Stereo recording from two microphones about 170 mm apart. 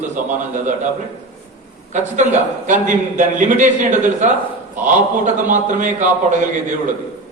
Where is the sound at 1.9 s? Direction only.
45° right (ahead or behind).